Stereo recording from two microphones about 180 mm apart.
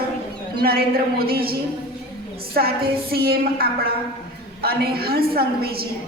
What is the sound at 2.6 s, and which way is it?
A woman's voice, 60° right (ahead or behind).